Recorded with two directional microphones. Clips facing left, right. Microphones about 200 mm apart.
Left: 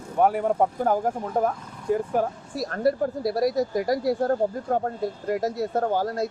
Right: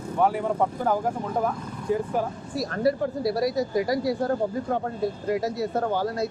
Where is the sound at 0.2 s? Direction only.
50° left (ahead or behind).